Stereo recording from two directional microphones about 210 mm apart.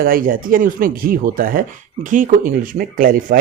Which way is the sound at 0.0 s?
45° right (ahead or behind).